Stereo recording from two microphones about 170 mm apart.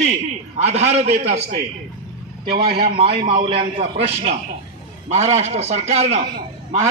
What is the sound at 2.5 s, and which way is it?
A man's voice, 30° right (ahead or behind).